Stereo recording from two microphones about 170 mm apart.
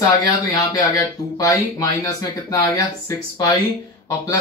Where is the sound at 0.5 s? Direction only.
20° left (ahead or behind).